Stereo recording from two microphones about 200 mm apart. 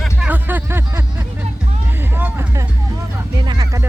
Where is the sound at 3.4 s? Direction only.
20° right (ahead or behind).